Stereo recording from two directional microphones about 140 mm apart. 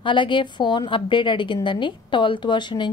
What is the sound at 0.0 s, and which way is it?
A woman's voice, 35° left (ahead or behind).